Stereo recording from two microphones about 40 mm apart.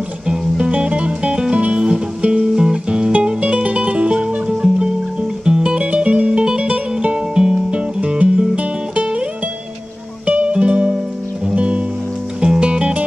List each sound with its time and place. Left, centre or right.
0.3 s music: right
10.2 s music: right